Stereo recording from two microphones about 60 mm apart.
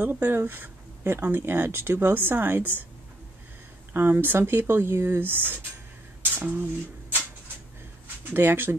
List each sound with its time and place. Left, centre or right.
0.0 s speech: right
3.9 s speech: right
6.5 s a sound: right
8.2 s speech: right